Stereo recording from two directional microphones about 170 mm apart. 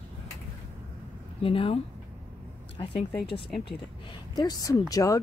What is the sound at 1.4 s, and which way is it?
Speech, 30° left (ahead or behind).